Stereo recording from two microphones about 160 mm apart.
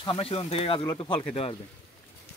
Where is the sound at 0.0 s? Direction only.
35° left (ahead or behind).